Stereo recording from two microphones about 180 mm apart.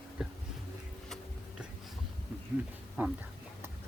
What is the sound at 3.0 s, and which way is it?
Speech, 10° right (ahead or behind).